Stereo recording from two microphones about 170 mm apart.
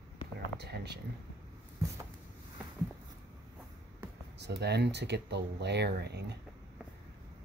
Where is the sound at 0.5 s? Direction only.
75° right (ahead or behind).